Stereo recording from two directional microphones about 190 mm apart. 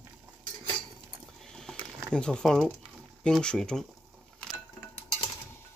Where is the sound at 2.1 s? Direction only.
5° left (ahead or behind).